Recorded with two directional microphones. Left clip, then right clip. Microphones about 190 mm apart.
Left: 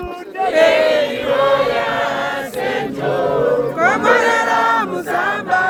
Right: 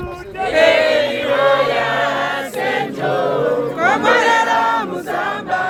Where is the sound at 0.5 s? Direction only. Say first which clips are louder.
Even; 75° left (ahead or behind).